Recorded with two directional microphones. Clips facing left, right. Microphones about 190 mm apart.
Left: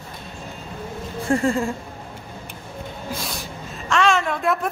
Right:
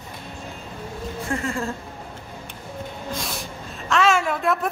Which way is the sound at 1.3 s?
30° left (ahead or behind).